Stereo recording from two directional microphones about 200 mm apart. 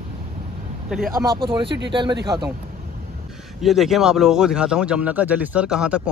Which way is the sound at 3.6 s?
Centre (ahead or behind).